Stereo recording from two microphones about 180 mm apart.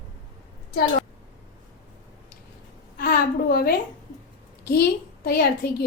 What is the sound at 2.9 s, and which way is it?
A woman's voice, 55° left (ahead or behind).